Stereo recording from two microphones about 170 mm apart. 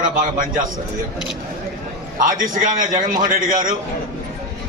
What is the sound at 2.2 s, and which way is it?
A man's voice, 55° right (ahead or behind).